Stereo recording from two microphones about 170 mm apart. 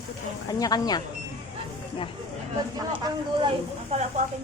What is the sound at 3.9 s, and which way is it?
Speech, 40° right (ahead or behind).